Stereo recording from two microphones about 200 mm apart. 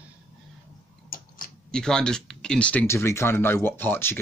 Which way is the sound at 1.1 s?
45° left (ahead or behind).